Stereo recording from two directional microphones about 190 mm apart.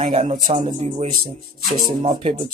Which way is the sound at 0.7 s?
40° right (ahead or behind).